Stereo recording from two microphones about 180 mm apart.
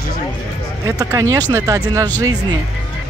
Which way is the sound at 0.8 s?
15° right (ahead or behind).